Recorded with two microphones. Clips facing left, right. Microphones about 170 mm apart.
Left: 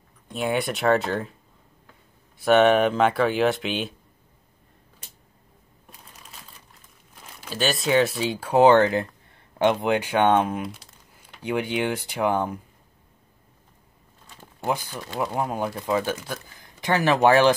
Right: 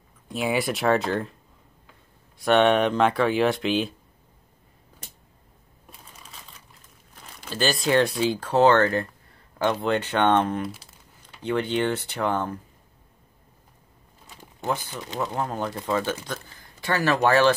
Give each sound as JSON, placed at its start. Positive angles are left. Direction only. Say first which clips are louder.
{"t": 0.3, "sound": "speech", "louder": "even", "side_deg": 0}
{"t": 2.3, "sound": "speech", "louder": "left 2 dB", "side_deg": 0}
{"t": 6.2, "sound": "crumpling", "louder": "even", "side_deg": 0}
{"t": 9.6, "sound": "speech", "louder": "left 3 dB", "side_deg": 15}
{"t": 14.3, "sound": "a sound", "louder": "left 1 dB", "side_deg": -15}
{"t": 15.1, "sound": "speech", "louder": "left 2 dB", "side_deg": 10}